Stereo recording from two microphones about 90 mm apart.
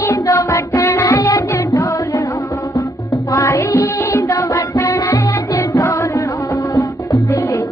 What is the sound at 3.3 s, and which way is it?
Music, 35° left (ahead or behind).